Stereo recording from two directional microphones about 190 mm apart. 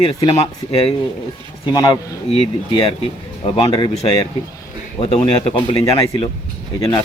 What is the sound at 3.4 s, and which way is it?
A man's voice, 30° left (ahead or behind).